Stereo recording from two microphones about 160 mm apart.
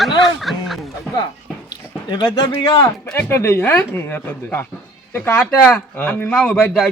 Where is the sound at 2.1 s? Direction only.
30° left (ahead or behind).